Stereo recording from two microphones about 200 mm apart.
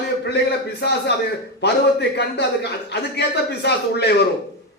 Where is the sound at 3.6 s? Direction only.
55° left (ahead or behind).